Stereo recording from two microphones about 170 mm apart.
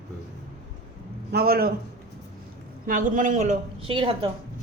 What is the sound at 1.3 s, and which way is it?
Speech, 65° right (ahead or behind).